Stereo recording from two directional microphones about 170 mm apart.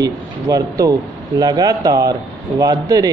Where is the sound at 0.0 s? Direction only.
20° right (ahead or behind).